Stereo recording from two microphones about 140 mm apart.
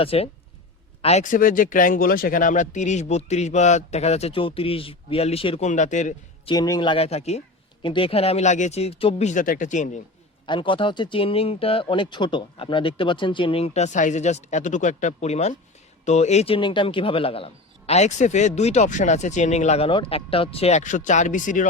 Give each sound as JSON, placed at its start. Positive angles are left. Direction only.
{"t": 0.0, "sound": "a man's voice", "side_deg": 45}
{"t": 1.0, "sound": "a man's voice", "side_deg": 60}
{"t": 5.6, "sound": "speech", "side_deg": 60}
{"t": 6.4, "sound": "speech", "side_deg": 30}
{"t": 7.8, "sound": "a man's voice", "side_deg": 35}
{"t": 10.4, "sound": "a man's voice", "side_deg": 35}
{"t": 16.6, "sound": "a man's voice", "side_deg": 35}